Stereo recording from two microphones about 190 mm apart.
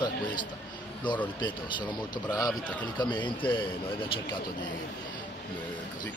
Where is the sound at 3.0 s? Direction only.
25° left (ahead or behind).